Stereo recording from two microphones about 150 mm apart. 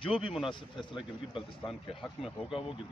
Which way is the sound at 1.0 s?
Centre (ahead or behind).